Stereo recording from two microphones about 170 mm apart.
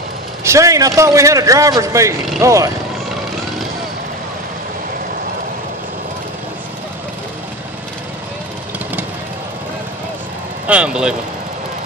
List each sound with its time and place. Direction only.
0.4 s a man's voice: 15° right (ahead or behind)
10.7 s speech: 5° right (ahead or behind)